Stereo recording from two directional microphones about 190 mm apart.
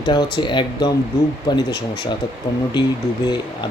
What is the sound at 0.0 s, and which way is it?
Speech, 20° left (ahead or behind).